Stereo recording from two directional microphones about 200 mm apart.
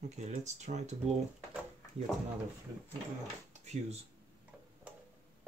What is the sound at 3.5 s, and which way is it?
Drawer open or close, 35° right (ahead or behind).